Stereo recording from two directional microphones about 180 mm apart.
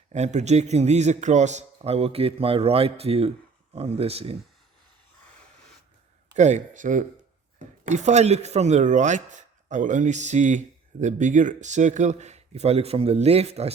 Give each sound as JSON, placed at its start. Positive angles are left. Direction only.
{"t": 0.1, "sound": "a man's voice", "side_deg": -40}
{"t": 6.3, "sound": "a man's voice", "side_deg": -40}